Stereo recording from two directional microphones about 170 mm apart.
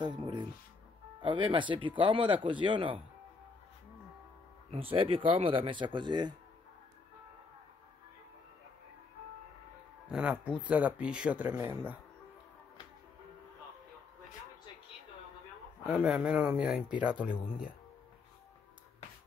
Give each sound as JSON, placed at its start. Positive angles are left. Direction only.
{"t": 0.0, "sound": "speech", "side_deg": -25}
{"t": 4.6, "sound": "speech", "side_deg": -35}
{"t": 10.0, "sound": "speech", "side_deg": -10}
{"t": 15.9, "sound": "speech", "side_deg": -5}